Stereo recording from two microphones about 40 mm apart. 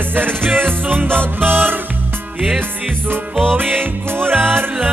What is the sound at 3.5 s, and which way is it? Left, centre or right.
Music, right.